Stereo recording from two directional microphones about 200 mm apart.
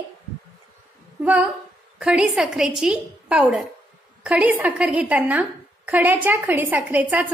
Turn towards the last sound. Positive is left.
turn(degrees=-10)  # may be behind; listen again after turning